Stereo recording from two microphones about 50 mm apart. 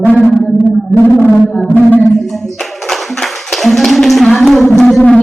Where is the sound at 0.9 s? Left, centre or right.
Left.